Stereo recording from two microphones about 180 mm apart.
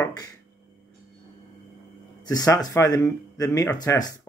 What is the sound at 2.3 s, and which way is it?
Speech, 20° left (ahead or behind).